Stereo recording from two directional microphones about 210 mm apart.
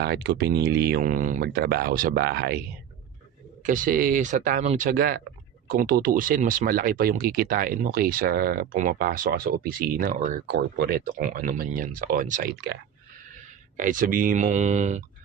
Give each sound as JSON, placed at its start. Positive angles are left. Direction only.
{"t": 0.0, "sound": "speech", "side_deg": -50}
{"t": 3.6, "sound": "speech", "side_deg": -40}
{"t": 13.7, "sound": "speech", "side_deg": -40}